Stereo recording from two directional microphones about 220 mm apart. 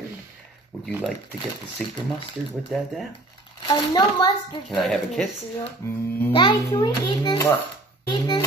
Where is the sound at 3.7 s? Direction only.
20° left (ahead or behind).